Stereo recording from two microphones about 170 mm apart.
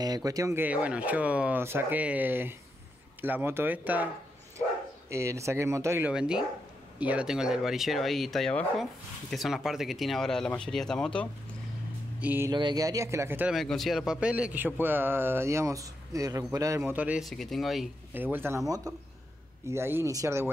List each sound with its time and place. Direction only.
0.0 s speech: 20° right (ahead or behind)
5.1 s speech: 15° right (ahead or behind)
6.1 s speech: 5° right (ahead or behind)
12.2 s speech: 10° right (ahead or behind)
12.4 s speech: 25° right (ahead or behind)
13.6 s speech: centre (ahead or behind)
18.1 s speech: 10° right (ahead or behind)
19.7 s speech: 15° right (ahead or behind)